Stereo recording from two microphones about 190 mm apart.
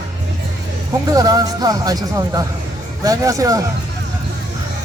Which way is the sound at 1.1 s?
20° right (ahead or behind).